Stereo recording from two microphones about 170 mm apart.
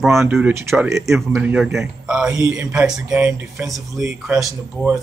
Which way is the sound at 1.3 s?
5° right (ahead or behind).